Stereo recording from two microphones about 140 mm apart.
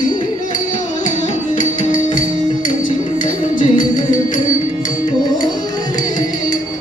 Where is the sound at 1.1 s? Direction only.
65° left (ahead or behind).